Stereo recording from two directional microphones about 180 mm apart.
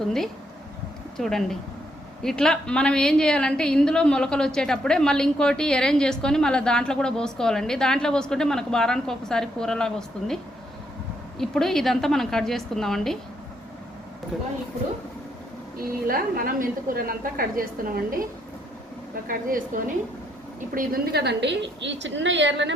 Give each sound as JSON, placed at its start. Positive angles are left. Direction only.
{"t": 1.1, "sound": "a woman's voice", "side_deg": 0}
{"t": 15.8, "sound": "a woman's voice", "side_deg": -55}
{"t": 19.3, "sound": "a woman's voice", "side_deg": -50}